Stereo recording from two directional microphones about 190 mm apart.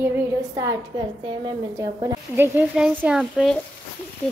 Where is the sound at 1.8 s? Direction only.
15° right (ahead or behind).